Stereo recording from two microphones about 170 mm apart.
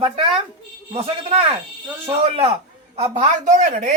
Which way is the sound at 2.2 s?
35° right (ahead or behind).